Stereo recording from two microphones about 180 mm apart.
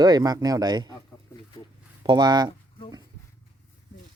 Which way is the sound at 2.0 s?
25° right (ahead or behind).